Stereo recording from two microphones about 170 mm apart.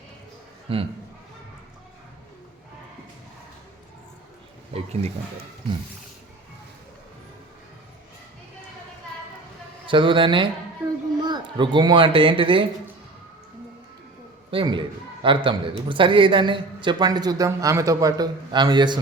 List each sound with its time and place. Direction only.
0.7 s a man's voice: 35° right (ahead or behind)
4.7 s a sound: 40° right (ahead or behind)
9.8 s a man's voice: 30° right (ahead or behind)
14.5 s a man's voice: 30° right (ahead or behind)